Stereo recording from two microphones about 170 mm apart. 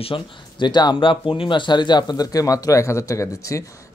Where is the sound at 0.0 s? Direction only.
30° left (ahead or behind).